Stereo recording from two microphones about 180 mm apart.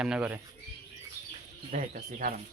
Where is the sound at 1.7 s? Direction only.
45° right (ahead or behind).